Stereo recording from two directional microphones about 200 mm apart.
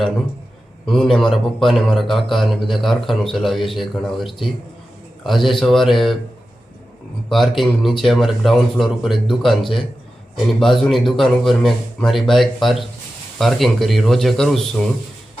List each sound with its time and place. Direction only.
0.9 s speech: centre (ahead or behind)
7.3 s speech: centre (ahead or behind)